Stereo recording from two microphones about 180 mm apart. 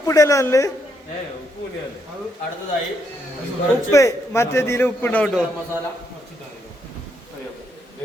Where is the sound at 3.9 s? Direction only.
15° left (ahead or behind).